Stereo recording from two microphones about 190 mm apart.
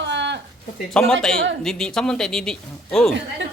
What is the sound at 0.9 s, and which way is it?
Speech, 5° left (ahead or behind).